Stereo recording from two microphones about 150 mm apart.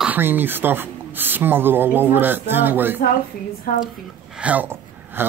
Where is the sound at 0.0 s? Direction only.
10° right (ahead or behind).